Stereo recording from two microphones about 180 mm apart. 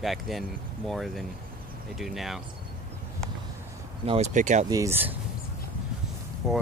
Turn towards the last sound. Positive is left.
turn(degrees=0)  # may be behind; listen again after turning